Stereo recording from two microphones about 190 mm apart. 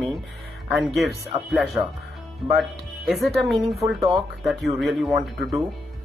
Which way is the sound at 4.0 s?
30° right (ahead or behind).